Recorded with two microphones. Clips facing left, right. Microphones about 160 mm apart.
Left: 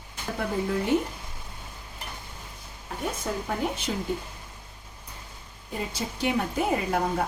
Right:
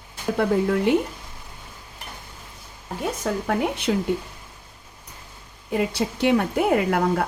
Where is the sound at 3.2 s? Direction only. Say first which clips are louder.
Right 6 dB; 90° right.